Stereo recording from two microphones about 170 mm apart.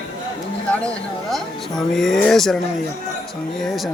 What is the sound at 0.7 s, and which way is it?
Speech, 5° left (ahead or behind).